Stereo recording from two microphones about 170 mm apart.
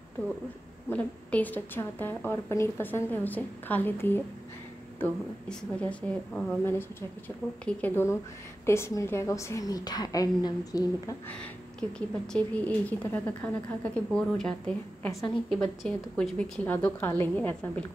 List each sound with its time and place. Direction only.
0.8 s a woman's voice: 10° left (ahead or behind)
12.3 s a woman's voice: 5° left (ahead or behind)
15.0 s a woman's voice: 15° left (ahead or behind)
15.8 s a woman's voice: 5° left (ahead or behind)